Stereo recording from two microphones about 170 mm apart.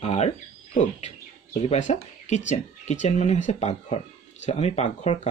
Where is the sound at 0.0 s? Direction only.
40° left (ahead or behind).